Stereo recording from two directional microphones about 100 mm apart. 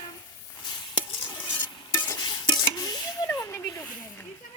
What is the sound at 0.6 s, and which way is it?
Chopping, 50° left (ahead or behind).